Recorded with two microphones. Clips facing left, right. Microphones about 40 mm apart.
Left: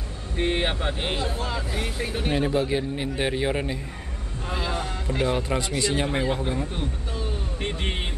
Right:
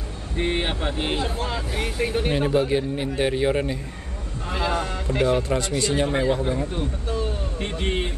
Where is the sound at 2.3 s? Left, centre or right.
Centre.